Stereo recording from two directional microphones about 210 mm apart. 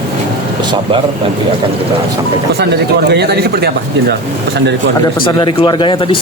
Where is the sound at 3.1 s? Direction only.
50° right (ahead or behind).